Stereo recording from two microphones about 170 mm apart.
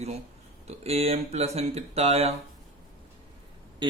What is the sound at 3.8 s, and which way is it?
Speech, 25° right (ahead or behind).